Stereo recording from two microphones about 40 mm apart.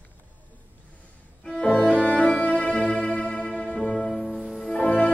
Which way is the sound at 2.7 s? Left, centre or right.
Left.